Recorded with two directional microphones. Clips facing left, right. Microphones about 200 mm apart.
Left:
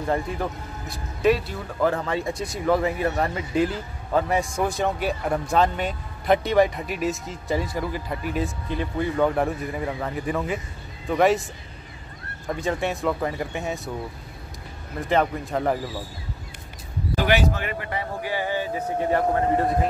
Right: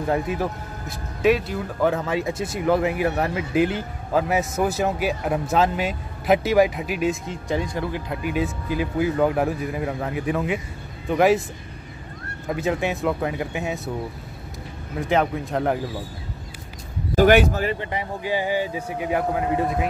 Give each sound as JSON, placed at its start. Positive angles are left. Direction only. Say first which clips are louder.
{"t": 0.4, "sound": "a man's voice", "louder": "right 2 dB", "side_deg": 0}
{"t": 12.4, "sound": "a man's voice", "louder": "right 2 dB", "side_deg": -5}
{"t": 15.0, "sound": "a man's voice", "louder": "right 1 dB", "side_deg": 0}
{"t": 17.1, "sound": "speech", "louder": "right 6 dB", "side_deg": -50}
{"t": 17.6, "sound": "speech", "louder": "right 5 dB", "side_deg": -30}
{"t": 17.8, "sound": "speech", "louder": "right 2 dB", "side_deg": -15}